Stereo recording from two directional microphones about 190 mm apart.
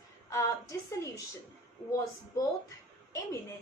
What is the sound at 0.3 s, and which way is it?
Speech, 15° left (ahead or behind).